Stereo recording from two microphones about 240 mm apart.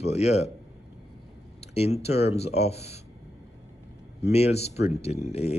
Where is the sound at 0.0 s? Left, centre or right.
Left.